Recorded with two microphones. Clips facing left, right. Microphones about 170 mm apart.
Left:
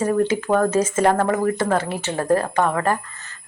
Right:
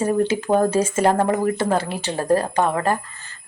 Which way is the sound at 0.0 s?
25° right (ahead or behind).